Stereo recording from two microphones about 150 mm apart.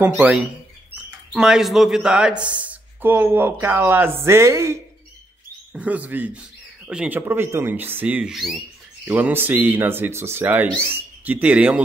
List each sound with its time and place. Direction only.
0.0 s speech: 10° right (ahead or behind)
9.1 s speech: 15° right (ahead or behind)